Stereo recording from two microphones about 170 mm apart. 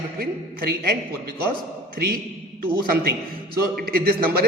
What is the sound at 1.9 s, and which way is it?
Speech, 60° right (ahead or behind).